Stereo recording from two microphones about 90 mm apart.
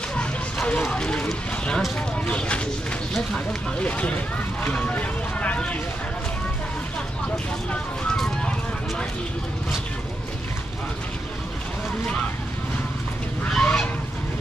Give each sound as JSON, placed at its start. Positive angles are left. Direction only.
{"t": 0.1, "sound": "music", "side_deg": 15}
{"t": 0.8, "sound": "a sound", "side_deg": 10}
{"t": 1.8, "sound": "speech", "side_deg": 10}
{"t": 8.2, "sound": "music", "side_deg": 10}
{"t": 13.5, "sound": "speech", "side_deg": 10}